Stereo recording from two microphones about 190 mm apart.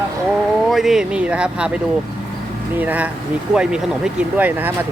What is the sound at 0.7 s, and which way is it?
Speech, centre (ahead or behind).